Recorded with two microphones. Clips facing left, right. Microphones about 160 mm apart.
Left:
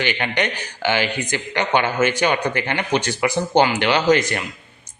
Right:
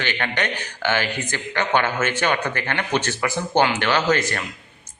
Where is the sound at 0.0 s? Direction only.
15° left (ahead or behind).